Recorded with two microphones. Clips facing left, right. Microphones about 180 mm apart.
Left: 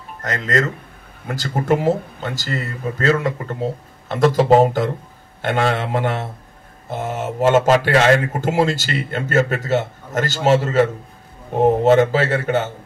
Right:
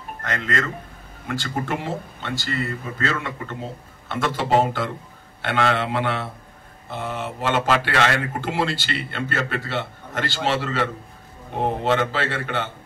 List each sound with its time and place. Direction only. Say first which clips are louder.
0.2 s speech: left 6 dB; 40° left (ahead or behind)